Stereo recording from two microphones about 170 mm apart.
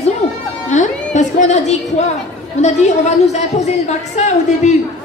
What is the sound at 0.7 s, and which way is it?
Music, 45° left (ahead or behind).